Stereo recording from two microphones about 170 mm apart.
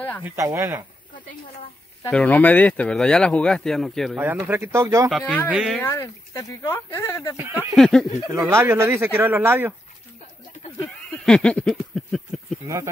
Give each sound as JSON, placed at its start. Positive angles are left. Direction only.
{"t": 0.2, "sound": "speech", "side_deg": -15}
{"t": 2.0, "sound": "speech", "side_deg": 10}
{"t": 4.2, "sound": "speech", "side_deg": -10}
{"t": 5.1, "sound": "speech", "side_deg": 10}
{"t": 5.5, "sound": "speech", "side_deg": -5}
{"t": 5.8, "sound": "speech", "side_deg": 15}
{"t": 7.3, "sound": "speech", "side_deg": -10}
{"t": 7.7, "sound": "speech", "side_deg": 0}
{"t": 8.3, "sound": "speech", "side_deg": -15}
{"t": 11.2, "sound": "a sound", "side_deg": 5}
{"t": 12.6, "sound": "speech", "side_deg": -20}